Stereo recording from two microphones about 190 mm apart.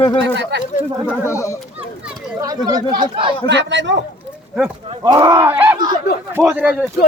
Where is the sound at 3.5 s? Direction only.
70° right (ahead or behind).